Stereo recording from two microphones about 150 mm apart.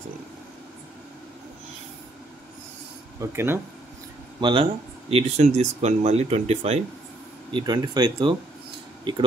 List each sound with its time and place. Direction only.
3.2 s speech: 15° right (ahead or behind)
4.4 s speech: 35° right (ahead or behind)
5.1 s speech: 45° right (ahead or behind)
7.5 s speech: 30° right (ahead or behind)